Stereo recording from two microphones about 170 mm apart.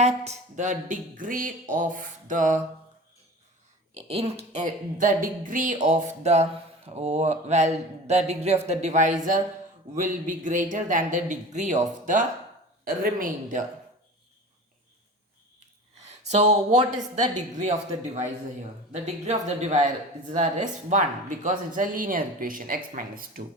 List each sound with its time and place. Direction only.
0.0 s speech: 45° right (ahead or behind)
3.9 s speech: 35° right (ahead or behind)
4.5 s a woman's voice: 50° right (ahead or behind)
16.3 s speech: 40° right (ahead or behind)